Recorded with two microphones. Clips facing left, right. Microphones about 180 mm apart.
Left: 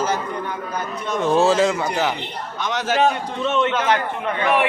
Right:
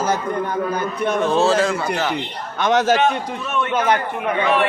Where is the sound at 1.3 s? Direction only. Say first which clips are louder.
Left 3 dB; 15° left (ahead or behind).